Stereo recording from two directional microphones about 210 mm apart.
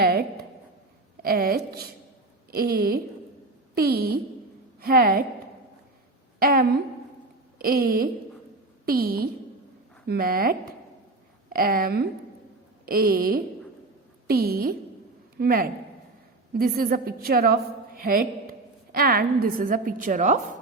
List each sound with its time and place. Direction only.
0.0 s a sound: 45° right (ahead or behind)
1.2 s speech: 45° right (ahead or behind)
6.4 s a woman's voice: 45° right (ahead or behind)